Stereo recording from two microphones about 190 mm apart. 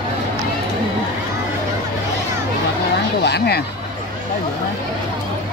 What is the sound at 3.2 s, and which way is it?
Speech, 60° left (ahead or behind).